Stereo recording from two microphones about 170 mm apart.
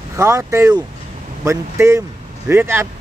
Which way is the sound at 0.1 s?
15° right (ahead or behind).